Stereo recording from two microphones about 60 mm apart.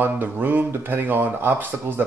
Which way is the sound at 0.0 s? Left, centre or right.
Right.